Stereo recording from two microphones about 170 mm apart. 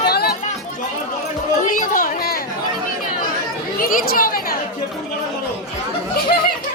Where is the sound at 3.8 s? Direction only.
55° left (ahead or behind).